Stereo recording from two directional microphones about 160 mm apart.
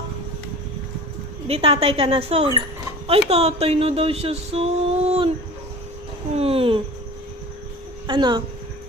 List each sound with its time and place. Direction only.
1.5 s speech: 40° right (ahead or behind)
6.3 s speech: 40° right (ahead or behind)
8.0 s speech: 30° right (ahead or behind)